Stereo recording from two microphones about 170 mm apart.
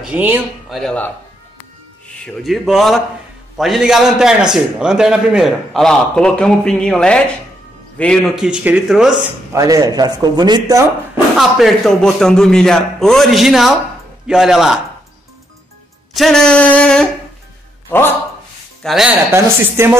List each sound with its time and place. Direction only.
0.0 s speech: 10° right (ahead or behind)
0.7 s a man's voice: 5° left (ahead or behind)
2.4 s a man's voice: centre (ahead or behind)
8.5 s a man's voice: 5° right (ahead or behind)
9.5 s a man's voice: 20° right (ahead or behind)
11.3 s a man's voice: centre (ahead or behind)
16.1 s a man's voice: centre (ahead or behind)
18.8 s speech: centre (ahead or behind)
19.3 s a woman's voice: 15° right (ahead or behind)